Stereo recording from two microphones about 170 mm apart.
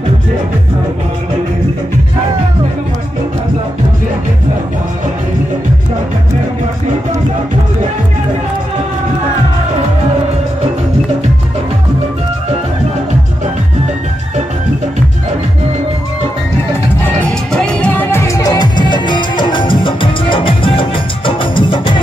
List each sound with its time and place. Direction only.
17.5 s music: 5° left (ahead or behind); by 22.0 s 30° left (ahead or behind)